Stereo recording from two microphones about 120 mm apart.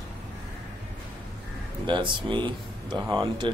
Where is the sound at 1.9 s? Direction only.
40° right (ahead or behind).